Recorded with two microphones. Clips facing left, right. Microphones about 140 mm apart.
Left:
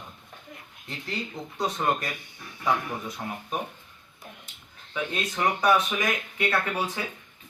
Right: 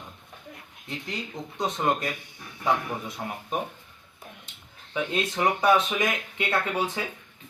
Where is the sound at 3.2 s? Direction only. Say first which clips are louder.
Even; 20° right (ahead or behind).